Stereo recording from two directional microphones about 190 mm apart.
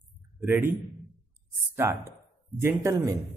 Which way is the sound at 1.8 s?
15° right (ahead or behind).